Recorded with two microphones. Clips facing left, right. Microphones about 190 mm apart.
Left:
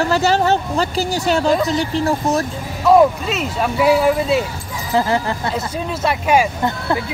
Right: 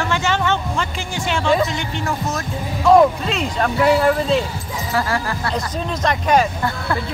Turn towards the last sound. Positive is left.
turn(degrees=10)  # may be behind; listen again after turning